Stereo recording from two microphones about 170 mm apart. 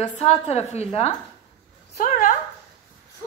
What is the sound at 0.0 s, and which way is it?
A woman's voice, 40° left (ahead or behind).